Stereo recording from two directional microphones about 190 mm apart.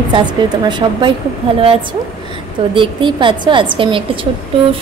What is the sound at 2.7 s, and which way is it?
A woman's voice, 25° right (ahead or behind).